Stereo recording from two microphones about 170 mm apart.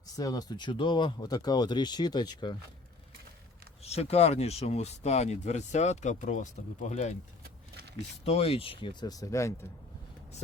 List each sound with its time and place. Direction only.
0.2 s speech: 20° left (ahead or behind)
3.8 s speech: 40° left (ahead or behind)
7.4 s a sound: 75° right (ahead or behind)
8.2 s speech: 35° left (ahead or behind); by 9.6 s 15° left (ahead or behind)